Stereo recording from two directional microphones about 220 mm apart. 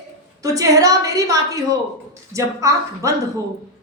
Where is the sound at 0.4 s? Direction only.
15° right (ahead or behind).